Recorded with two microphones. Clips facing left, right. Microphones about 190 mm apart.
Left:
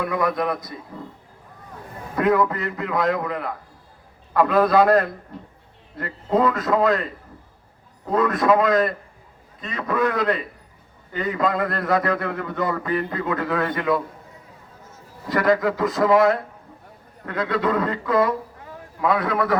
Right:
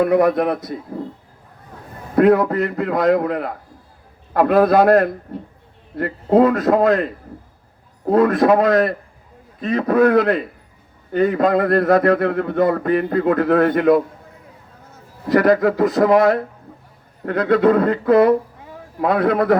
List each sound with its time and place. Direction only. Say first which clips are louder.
0.0 s a man's voice: right 8 dB; 60° right (ahead or behind)
2.1 s a man's voice: right 6 dB; 60° right (ahead or behind)
15.3 s a man's voice: right 5 dB; 55° right (ahead or behind)